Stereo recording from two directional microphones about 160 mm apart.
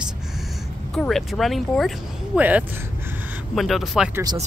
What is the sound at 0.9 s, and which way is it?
Speech, centre (ahead or behind).